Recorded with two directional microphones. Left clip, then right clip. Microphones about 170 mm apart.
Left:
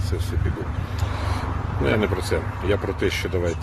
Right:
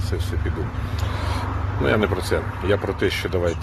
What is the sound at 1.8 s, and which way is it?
Speech, 45° right (ahead or behind).